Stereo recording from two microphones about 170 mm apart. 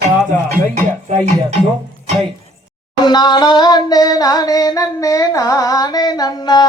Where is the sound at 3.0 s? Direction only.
25° left (ahead or behind).